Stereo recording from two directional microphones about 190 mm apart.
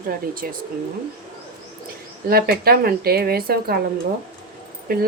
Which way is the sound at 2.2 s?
50° right (ahead or behind).